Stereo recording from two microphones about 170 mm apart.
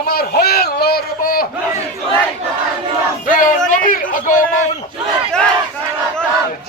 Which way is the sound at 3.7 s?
50° left (ahead or behind).